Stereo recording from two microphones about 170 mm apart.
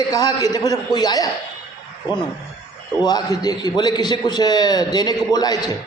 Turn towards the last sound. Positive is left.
turn(degrees=20)  # may be behind; listen again after turning